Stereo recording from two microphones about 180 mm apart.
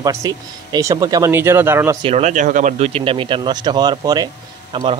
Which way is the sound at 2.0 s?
40° right (ahead or behind).